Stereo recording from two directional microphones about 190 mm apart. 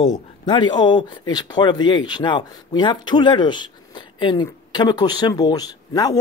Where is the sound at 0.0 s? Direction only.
25° left (ahead or behind).